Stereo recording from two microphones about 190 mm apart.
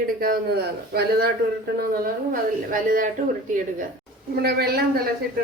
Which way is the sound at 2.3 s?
45° right (ahead or behind).